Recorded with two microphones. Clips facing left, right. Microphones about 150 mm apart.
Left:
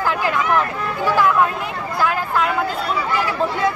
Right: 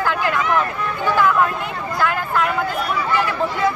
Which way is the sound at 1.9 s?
5° left (ahead or behind).